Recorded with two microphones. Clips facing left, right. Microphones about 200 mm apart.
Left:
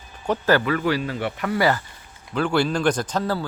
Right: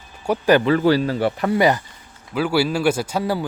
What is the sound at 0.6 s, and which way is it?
Speech, 30° right (ahead or behind).